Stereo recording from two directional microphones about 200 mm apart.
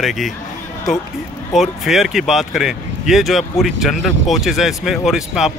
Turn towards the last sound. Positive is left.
turn(degrees=0)  # may be behind; listen again after turning